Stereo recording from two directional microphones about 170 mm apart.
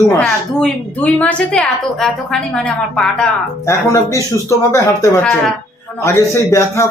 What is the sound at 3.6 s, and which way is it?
Speech, 15° left (ahead or behind).